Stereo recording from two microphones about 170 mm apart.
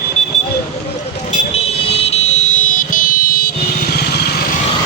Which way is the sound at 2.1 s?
40° left (ahead or behind).